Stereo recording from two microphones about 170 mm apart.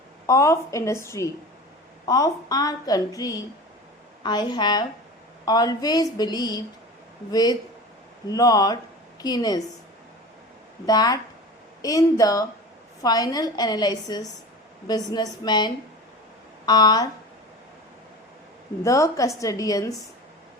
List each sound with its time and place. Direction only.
0.3 s a woman's voice: 20° left (ahead or behind)
10.8 s a woman's voice: 20° left (ahead or behind)
18.8 s a woman's voice: 20° left (ahead or behind)